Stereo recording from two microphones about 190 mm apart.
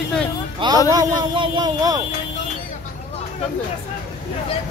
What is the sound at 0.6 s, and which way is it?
Speech, 25° right (ahead or behind).